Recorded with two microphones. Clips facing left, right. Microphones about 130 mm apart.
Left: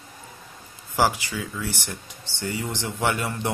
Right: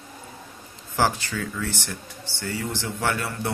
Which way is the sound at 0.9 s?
15° left (ahead or behind).